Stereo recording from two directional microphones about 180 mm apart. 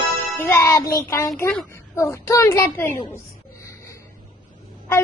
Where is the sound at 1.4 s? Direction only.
10° left (ahead or behind).